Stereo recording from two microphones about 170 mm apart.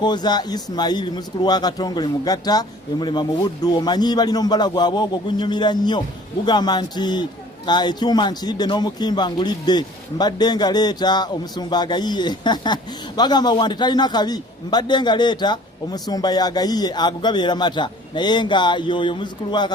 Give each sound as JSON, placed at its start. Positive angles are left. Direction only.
{"t": 0.0, "sound": "a man's voice", "side_deg": 25}